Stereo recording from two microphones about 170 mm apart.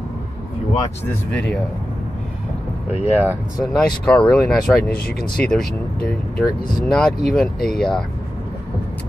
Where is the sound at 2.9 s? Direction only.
10° right (ahead or behind).